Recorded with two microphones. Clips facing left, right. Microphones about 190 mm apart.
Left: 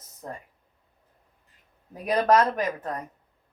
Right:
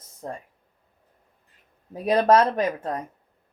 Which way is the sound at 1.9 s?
25° right (ahead or behind).